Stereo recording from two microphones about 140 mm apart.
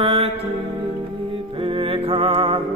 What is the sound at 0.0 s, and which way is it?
Music, 40° right (ahead or behind).